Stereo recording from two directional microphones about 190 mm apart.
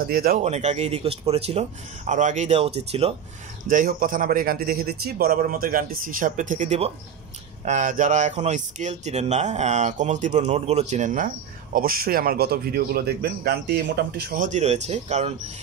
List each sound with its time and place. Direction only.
0.0 s a man's voice: 50° right (ahead or behind)
0.4 s speech: 35° right (ahead or behind)
3.6 s a man's voice: 45° right (ahead or behind)